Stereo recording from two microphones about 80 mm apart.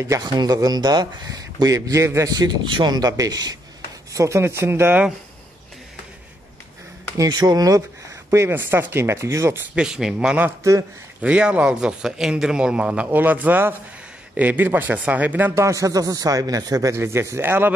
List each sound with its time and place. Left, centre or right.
0.2 s speech: right
2.6 s speech: right
4.1 s speech: right
7.2 s speech: right
8.3 s speech: right
9.8 s a man's voice: centre
10.6 s speech: right
11.2 s a man's voice: centre
15.5 s speech: right
16.9 s speech: right